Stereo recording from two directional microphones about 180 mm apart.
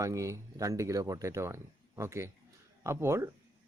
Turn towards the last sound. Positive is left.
turn(degrees=-15)  # may be behind; listen again after turning